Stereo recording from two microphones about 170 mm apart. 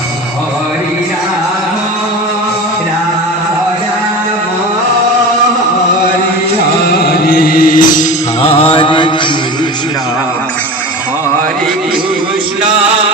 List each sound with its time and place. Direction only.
6.8 s music: 70° left (ahead or behind); by 8.0 s 55° left (ahead or behind)
8.4 s mantra: 35° left (ahead or behind)